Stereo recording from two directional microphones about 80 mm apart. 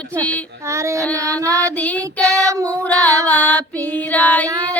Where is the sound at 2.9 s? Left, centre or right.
Centre.